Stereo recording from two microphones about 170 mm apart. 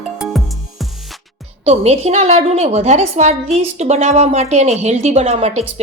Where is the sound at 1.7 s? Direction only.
35° right (ahead or behind).